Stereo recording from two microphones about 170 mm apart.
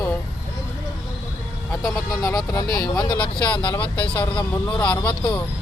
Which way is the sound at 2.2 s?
20° left (ahead or behind).